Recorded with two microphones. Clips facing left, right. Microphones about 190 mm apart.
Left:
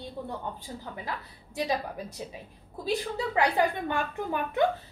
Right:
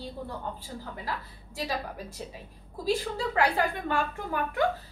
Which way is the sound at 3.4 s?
20° left (ahead or behind).